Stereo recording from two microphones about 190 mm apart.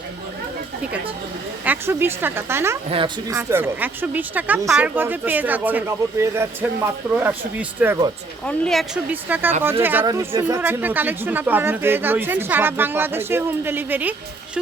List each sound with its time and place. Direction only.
1.6 s speech: 10° right (ahead or behind)
2.9 s speech: 25° right (ahead or behind)
3.3 s speech: 10° right (ahead or behind)
8.4 s speech: 5° left (ahead or behind)
9.3 s speech: 10° right (ahead or behind)